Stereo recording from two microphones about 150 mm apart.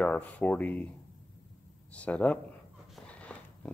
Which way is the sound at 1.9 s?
10° left (ahead or behind).